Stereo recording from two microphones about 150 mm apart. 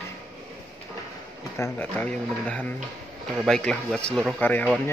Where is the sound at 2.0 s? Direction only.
10° left (ahead or behind).